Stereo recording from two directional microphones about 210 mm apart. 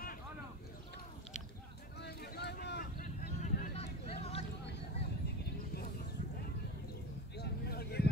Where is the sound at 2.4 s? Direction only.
50° left (ahead or behind).